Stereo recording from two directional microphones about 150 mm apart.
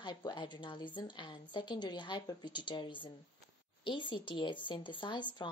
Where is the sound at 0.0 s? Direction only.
30° left (ahead or behind).